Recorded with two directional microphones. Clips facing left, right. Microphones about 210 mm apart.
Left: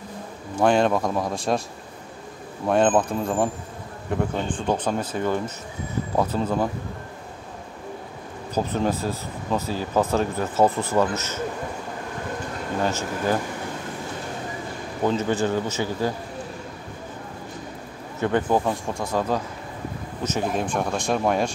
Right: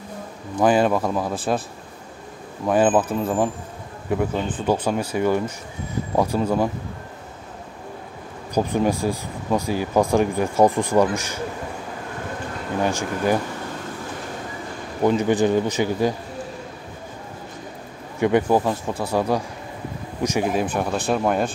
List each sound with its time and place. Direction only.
0.6 s speech: 5° right (ahead or behind)
2.7 s speech: 5° right (ahead or behind)
8.5 s speech: 10° right (ahead or behind)
12.8 s speech: 15° right (ahead or behind)
15.0 s speech: 15° right (ahead or behind)
18.2 s speech: 10° right (ahead or behind)